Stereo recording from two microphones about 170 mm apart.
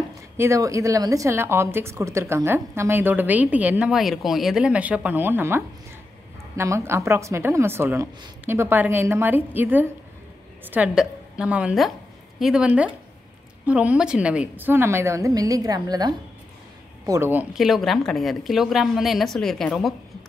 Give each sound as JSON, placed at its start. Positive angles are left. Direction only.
{"t": 0.4, "sound": "a woman's voice", "side_deg": -15}